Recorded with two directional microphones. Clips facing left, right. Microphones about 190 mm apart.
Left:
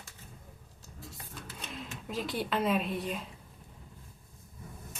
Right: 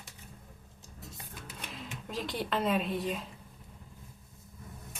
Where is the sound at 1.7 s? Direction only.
Centre (ahead or behind).